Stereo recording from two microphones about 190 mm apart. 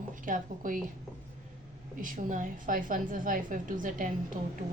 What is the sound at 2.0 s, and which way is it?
A woman's voice, 45° right (ahead or behind).